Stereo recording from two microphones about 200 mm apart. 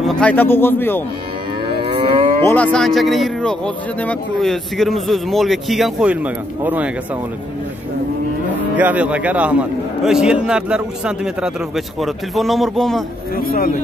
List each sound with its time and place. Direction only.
0.0 s a man's voice: 5° left (ahead or behind)
1.7 s livestock: 25° right (ahead or behind)
2.4 s speech: 5° left (ahead or behind)
8.7 s speech: 10° right (ahead or behind)
13.4 s speech: 45° left (ahead or behind)